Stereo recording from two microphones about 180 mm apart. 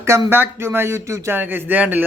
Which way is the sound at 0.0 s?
15° right (ahead or behind).